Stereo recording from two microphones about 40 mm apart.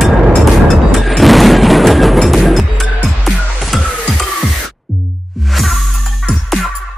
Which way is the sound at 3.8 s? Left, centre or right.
Left.